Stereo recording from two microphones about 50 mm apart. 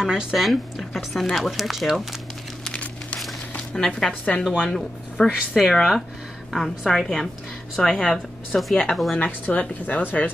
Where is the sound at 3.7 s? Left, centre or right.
Centre.